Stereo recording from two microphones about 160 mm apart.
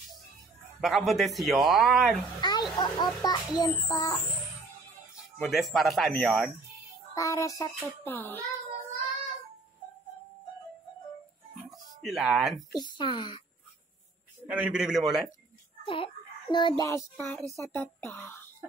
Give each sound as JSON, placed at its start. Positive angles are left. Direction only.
{"t": 0.7, "sound": "speech", "side_deg": 0}
{"t": 2.4, "sound": "a child's voice", "side_deg": 25}
{"t": 5.4, "sound": "speech", "side_deg": 0}
{"t": 7.2, "sound": "a child's voice", "side_deg": 20}
{"t": 8.0, "sound": "child singing", "side_deg": 10}
{"t": 11.7, "sound": "music", "side_deg": 0}
{"t": 12.7, "sound": "a child's voice", "side_deg": 30}
{"t": 14.5, "sound": "speech", "side_deg": -5}
{"t": 15.8, "sound": "child singing", "side_deg": 30}
{"t": 16.8, "sound": "child singing", "side_deg": 15}